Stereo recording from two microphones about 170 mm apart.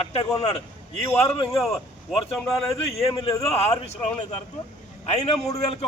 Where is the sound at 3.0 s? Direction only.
25° left (ahead or behind).